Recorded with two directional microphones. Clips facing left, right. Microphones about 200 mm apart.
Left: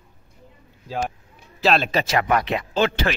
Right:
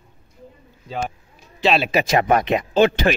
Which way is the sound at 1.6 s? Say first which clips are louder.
Right 2 dB; 5° right (ahead or behind).